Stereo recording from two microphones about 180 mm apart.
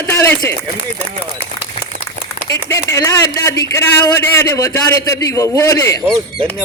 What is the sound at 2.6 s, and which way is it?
A man's voice, 15° left (ahead or behind).